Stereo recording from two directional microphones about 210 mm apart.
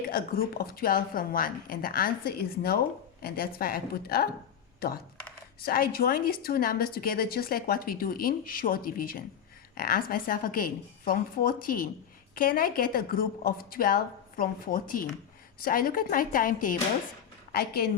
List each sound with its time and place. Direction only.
0.1 s a woman's voice: 45° left (ahead or behind)
5.6 s a woman's voice: 45° left (ahead or behind)